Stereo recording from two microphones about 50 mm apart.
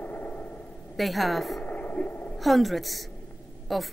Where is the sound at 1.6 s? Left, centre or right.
Left.